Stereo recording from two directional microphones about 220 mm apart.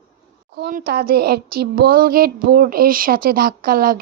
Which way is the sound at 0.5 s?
45° right (ahead or behind).